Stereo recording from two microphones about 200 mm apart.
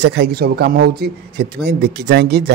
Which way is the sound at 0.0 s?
60° right (ahead or behind).